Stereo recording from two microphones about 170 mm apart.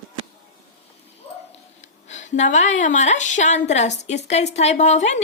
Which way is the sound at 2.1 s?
45° left (ahead or behind).